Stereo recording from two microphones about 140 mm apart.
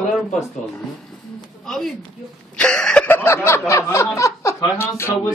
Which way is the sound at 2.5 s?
5° left (ahead or behind).